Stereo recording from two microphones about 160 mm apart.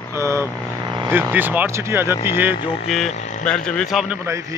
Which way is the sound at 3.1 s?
50° left (ahead or behind).